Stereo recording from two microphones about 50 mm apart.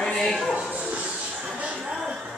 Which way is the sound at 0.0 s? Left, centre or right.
Centre.